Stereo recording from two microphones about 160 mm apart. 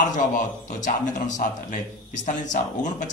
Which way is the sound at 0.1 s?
50° left (ahead or behind).